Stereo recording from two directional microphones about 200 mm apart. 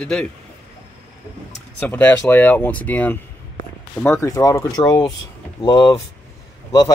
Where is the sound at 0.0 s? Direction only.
5° left (ahead or behind).